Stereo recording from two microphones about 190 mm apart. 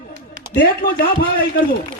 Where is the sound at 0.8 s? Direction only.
50° left (ahead or behind).